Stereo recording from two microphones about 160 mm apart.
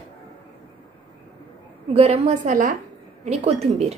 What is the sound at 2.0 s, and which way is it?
Speech, 40° right (ahead or behind).